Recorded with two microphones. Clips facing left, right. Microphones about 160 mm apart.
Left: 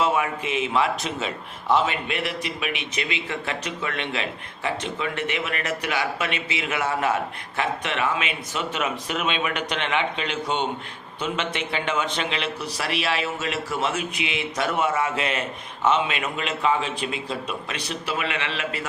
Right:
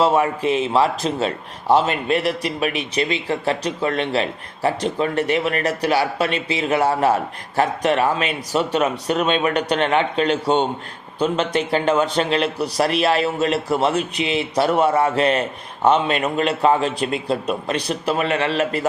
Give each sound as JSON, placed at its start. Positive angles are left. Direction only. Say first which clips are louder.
{"t": 0.0, "sound": "a man's voice", "louder": "right 6 dB", "side_deg": -35}